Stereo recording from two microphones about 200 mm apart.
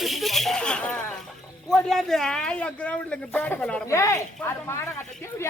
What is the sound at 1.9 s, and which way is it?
Speech, centre (ahead or behind).